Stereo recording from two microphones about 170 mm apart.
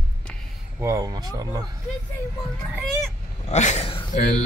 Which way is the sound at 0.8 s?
20° right (ahead or behind).